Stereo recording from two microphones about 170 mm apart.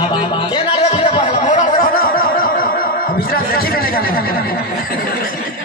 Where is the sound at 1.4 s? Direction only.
50° left (ahead or behind).